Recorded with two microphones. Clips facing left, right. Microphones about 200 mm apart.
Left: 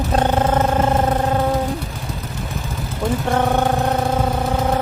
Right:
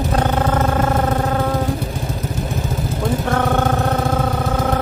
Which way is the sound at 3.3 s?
15° left (ahead or behind).